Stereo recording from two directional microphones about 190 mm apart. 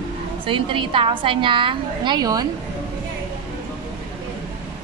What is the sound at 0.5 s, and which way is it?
A woman's voice, 25° right (ahead or behind).